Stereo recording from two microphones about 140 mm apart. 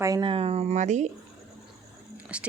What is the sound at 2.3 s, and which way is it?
Speech, 10° right (ahead or behind).